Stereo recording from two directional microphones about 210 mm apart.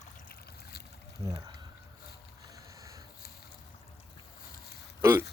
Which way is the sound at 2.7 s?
15° right (ahead or behind).